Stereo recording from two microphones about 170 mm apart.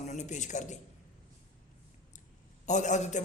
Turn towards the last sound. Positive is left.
turn(degrees=45)  # may be behind; listen again after turning